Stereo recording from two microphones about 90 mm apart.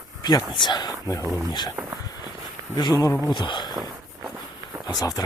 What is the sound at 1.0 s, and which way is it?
Speech, 40° left (ahead or behind).